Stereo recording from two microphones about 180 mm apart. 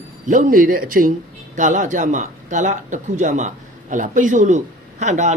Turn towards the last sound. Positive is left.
turn(degrees=-40)  # may be behind; listen again after turning